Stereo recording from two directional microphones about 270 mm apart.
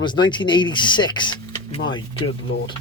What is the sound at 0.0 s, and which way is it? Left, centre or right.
Speech, centre.